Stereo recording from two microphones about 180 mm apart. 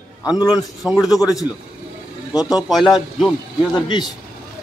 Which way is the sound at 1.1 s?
Centre (ahead or behind).